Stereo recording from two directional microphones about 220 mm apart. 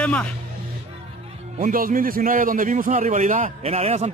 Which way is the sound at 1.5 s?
40° right (ahead or behind).